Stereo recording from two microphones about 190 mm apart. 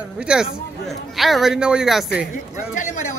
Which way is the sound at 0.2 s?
5° right (ahead or behind).